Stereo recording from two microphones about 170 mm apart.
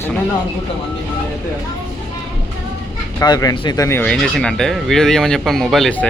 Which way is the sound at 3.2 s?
20° left (ahead or behind).